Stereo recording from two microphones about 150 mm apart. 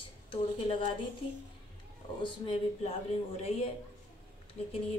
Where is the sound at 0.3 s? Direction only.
35° left (ahead or behind).